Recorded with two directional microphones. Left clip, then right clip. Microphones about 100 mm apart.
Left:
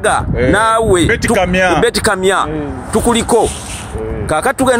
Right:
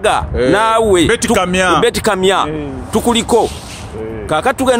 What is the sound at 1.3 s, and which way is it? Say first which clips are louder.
Speech: left 2 dB; 25° right (ahead or behind).